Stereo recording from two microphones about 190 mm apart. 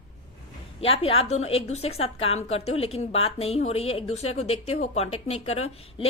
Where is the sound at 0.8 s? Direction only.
30° left (ahead or behind).